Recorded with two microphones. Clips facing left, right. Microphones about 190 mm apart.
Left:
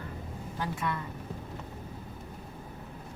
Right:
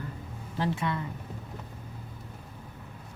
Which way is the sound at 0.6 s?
20° right (ahead or behind).